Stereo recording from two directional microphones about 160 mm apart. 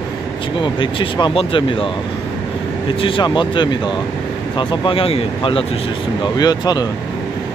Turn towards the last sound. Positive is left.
turn(degrees=25)  # may be behind; listen again after turning